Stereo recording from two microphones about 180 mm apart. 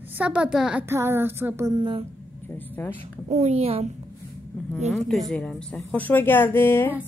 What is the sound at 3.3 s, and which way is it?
Speech, 35° right (ahead or behind).